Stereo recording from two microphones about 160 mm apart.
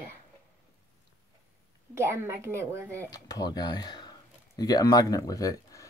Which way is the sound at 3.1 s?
25° left (ahead or behind).